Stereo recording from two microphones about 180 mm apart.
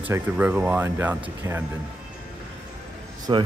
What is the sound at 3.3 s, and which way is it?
Speech, 25° right (ahead or behind).